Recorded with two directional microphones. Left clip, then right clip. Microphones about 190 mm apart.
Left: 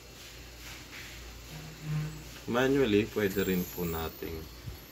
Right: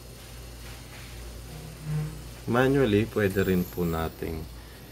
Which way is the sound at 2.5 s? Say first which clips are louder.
Right 3 dB; 45° right (ahead or behind).